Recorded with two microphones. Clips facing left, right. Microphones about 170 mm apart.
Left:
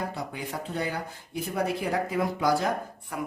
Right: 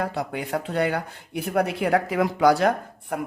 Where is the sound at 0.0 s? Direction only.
70° right (ahead or behind).